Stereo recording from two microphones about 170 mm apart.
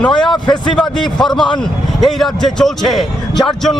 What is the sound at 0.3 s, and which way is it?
Speech, 25° left (ahead or behind).